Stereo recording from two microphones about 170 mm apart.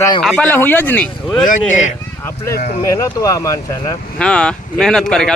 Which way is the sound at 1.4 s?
50° left (ahead or behind).